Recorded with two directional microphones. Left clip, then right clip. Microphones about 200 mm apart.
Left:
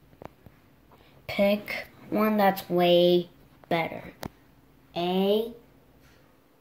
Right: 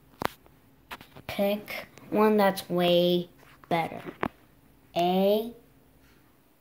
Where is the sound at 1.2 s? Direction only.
10° left (ahead or behind).